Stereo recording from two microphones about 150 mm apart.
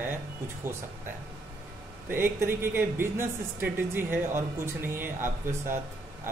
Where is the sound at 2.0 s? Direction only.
15° right (ahead or behind).